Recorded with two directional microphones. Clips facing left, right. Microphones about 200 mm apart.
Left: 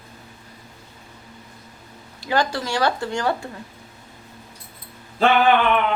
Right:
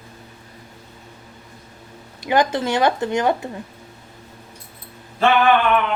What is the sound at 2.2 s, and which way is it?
Speech, 20° right (ahead or behind).